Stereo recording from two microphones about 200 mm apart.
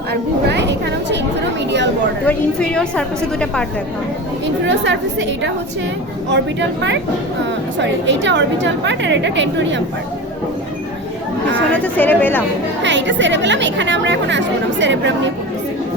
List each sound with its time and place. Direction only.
0.1 s a sound: 60° right (ahead or behind)
2.2 s a woman's voice: 5° left (ahead or behind)
4.6 s speech: 65° right (ahead or behind)
11.7 s a woman's voice: 5° left (ahead or behind)
12.8 s speech: 65° right (ahead or behind)